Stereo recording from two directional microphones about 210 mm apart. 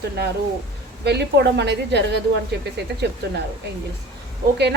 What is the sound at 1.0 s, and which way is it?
A woman's voice, 55° right (ahead or behind).